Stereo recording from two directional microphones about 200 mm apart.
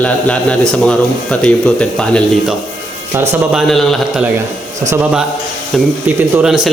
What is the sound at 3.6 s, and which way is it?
A man's voice, centre (ahead or behind).